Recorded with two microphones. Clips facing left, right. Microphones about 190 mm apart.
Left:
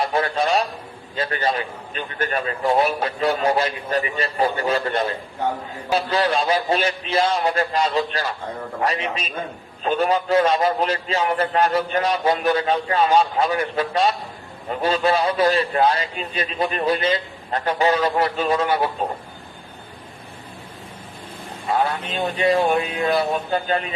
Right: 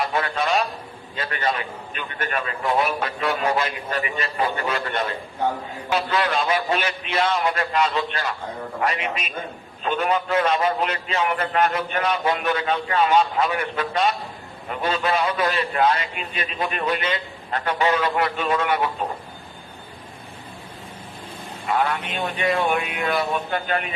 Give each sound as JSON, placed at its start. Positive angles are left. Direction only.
{"t": 0.0, "sound": "a man's voice", "side_deg": 30}
{"t": 21.7, "sound": "a man's voice", "side_deg": 35}